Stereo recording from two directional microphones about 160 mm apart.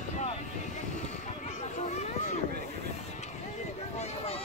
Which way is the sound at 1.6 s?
45° left (ahead or behind).